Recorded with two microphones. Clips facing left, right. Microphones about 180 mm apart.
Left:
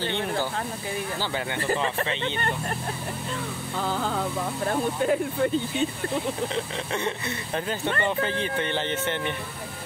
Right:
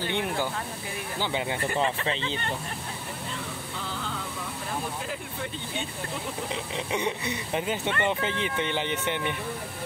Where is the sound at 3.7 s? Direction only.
45° left (ahead or behind).